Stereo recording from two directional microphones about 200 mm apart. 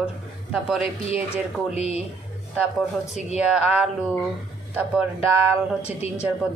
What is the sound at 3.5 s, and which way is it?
A woman's voice, 5° right (ahead or behind).